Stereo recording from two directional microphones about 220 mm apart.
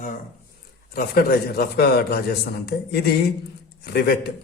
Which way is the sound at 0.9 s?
45° left (ahead or behind).